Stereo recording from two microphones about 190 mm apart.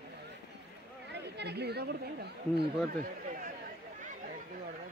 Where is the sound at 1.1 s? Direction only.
65° right (ahead or behind).